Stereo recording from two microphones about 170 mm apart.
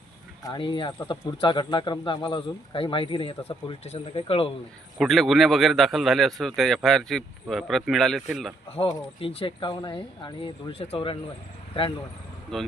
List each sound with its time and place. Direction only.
0.4 s speech: 25° left (ahead or behind)
4.9 s a man's voice: centre (ahead or behind)
8.9 s speech: 30° left (ahead or behind)
12.5 s a man's voice: centre (ahead or behind)